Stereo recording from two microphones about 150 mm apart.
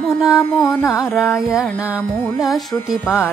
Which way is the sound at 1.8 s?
10° right (ahead or behind).